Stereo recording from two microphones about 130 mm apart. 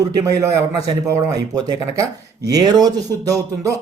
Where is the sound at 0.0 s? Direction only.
25° right (ahead or behind).